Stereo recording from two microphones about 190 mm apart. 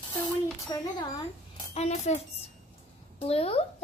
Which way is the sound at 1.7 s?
35° left (ahead or behind).